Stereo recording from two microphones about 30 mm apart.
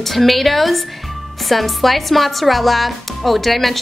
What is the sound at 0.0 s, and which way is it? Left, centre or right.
Speech, centre.